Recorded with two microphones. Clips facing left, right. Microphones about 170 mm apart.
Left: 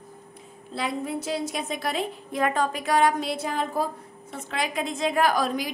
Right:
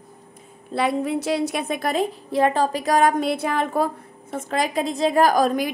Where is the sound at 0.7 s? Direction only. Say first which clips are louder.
Right 7 dB; 65° right (ahead or behind).